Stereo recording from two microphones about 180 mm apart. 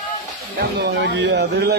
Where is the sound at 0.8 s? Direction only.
70° right (ahead or behind).